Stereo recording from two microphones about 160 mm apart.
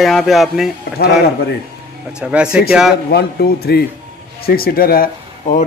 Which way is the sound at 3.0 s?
80° left.